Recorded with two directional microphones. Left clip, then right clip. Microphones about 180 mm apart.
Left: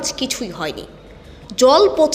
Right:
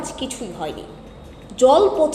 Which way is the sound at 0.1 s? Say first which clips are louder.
Left 5 dB; 45° left (ahead or behind).